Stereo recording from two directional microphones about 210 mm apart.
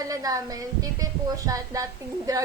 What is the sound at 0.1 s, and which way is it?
A woman's voice, 15° right (ahead or behind).